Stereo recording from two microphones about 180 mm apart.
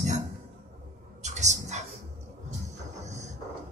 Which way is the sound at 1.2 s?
40° right (ahead or behind).